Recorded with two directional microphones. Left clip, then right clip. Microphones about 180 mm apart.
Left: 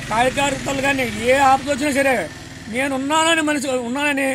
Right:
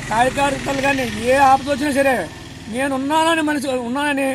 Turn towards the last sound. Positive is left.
turn(degrees=10)  # may be behind; listen again after turning